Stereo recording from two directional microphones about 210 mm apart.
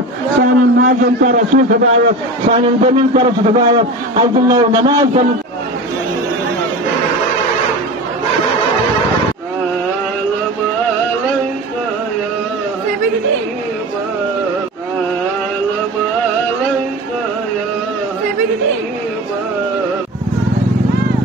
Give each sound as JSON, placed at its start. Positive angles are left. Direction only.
{"t": 0.4, "sound": "a man's voice", "side_deg": -40}